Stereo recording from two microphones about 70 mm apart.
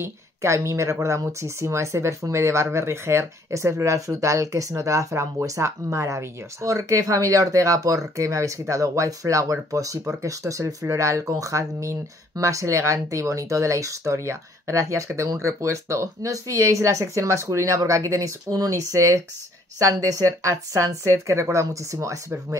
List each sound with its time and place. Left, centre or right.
0.0 s speech: right